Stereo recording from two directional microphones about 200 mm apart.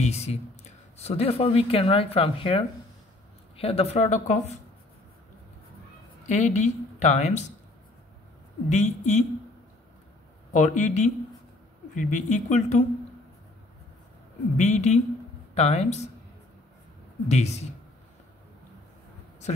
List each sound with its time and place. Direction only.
0.0 s a woman's voice: 30° left (ahead or behind)
6.2 s a woman's voice: 35° left (ahead or behind)
8.6 s a woman's voice: 35° left (ahead or behind)
10.5 s a woman's voice: 40° left (ahead or behind)
14.6 s a woman's voice: 35° left (ahead or behind)
17.3 s a woman's voice: 35° left (ahead or behind)